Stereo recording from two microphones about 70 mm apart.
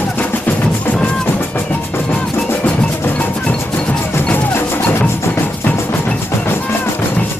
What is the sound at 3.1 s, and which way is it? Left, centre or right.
Percussion, centre.